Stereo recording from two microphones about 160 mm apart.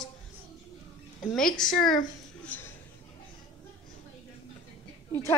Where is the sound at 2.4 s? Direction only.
10° left (ahead or behind).